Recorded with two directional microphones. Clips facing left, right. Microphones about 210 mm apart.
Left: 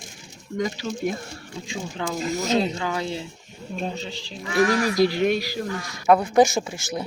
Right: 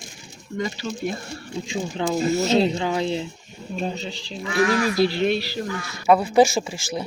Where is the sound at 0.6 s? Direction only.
15° left (ahead or behind).